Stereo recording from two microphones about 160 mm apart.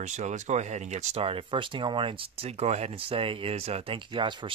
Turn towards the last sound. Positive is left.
turn(degrees=-30)  # may be behind; listen again after turning